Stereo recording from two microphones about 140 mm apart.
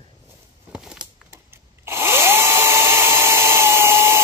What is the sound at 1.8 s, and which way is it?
Drill, 15° right (ahead or behind).